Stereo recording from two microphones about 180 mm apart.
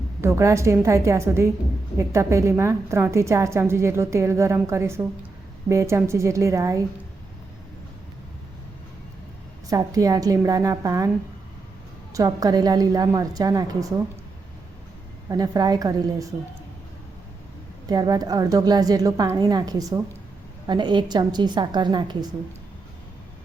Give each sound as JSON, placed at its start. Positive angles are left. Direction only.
{"t": 0.2, "sound": "a woman's voice", "side_deg": -15}
{"t": 9.6, "sound": "a woman's voice", "side_deg": -20}
{"t": 12.1, "sound": "a woman's voice", "side_deg": -20}
{"t": 15.3, "sound": "a woman's voice", "side_deg": -20}
{"t": 17.8, "sound": "a woman's voice", "side_deg": -20}